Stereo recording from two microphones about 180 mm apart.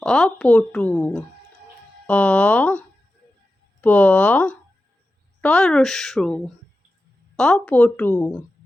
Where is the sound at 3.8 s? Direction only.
10° left (ahead or behind).